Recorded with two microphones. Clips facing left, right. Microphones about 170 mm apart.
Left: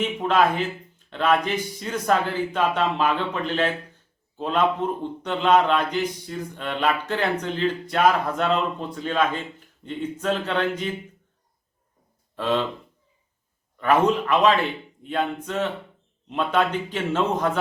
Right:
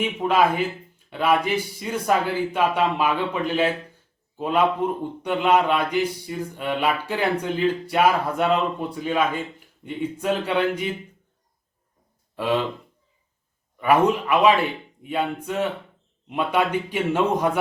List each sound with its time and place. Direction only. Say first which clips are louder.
0.0 s a man's voice: right 1 dB; 10° right (ahead or behind)
12.4 s a man's voice: right 1 dB; 10° right (ahead or behind)
13.7 s a man's voice: right 1 dB; 10° right (ahead or behind)